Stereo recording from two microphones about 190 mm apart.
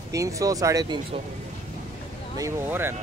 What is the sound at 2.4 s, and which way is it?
Speech, 15° right (ahead or behind).